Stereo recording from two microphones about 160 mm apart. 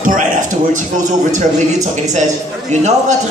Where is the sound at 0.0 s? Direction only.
55° right (ahead or behind).